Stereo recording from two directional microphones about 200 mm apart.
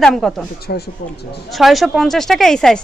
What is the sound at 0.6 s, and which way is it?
Speech, 50° left (ahead or behind).